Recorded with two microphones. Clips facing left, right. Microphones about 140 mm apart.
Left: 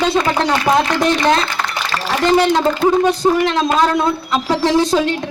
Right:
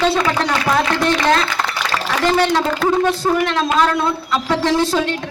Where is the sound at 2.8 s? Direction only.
15° left (ahead or behind).